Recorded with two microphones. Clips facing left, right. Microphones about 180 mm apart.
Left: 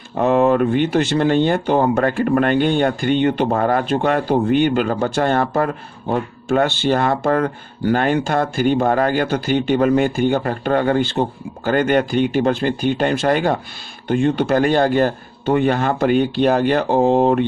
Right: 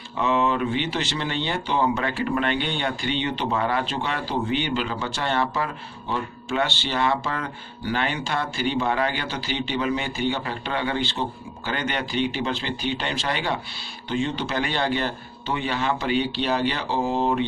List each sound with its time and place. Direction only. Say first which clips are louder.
0.2 s speech: left 8 dB; 50° left (ahead or behind)